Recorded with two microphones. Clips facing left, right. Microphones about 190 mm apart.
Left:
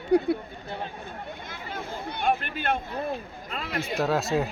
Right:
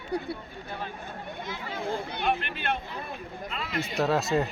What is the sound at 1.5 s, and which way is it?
Speech, 50° left (ahead or behind).